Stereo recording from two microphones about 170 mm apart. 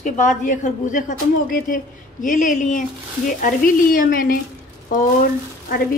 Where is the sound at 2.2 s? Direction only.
50° left (ahead or behind).